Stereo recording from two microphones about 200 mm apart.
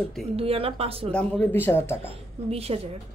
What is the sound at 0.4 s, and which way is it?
Speech, 30° right (ahead or behind).